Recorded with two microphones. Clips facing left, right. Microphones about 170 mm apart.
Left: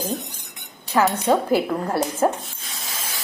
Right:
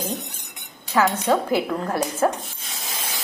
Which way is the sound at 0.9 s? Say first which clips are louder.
Left 1 dB; 10° left (ahead or behind).